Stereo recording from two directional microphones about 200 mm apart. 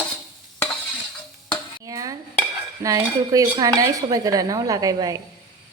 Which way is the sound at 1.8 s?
15° right (ahead or behind).